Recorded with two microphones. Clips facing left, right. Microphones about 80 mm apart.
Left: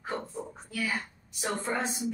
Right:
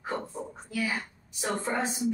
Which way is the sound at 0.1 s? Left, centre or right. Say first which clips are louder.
Right 1 dB; right.